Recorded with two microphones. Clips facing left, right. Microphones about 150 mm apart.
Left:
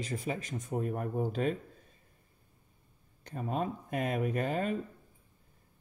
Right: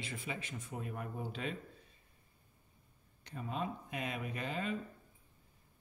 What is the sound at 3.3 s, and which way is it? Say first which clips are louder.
Speech: left 6 dB; 50° left (ahead or behind).